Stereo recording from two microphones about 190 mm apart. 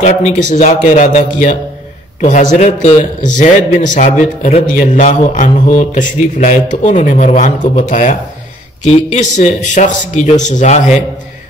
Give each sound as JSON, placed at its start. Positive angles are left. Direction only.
{"t": 0.0, "sound": "a man's voice", "side_deg": 40}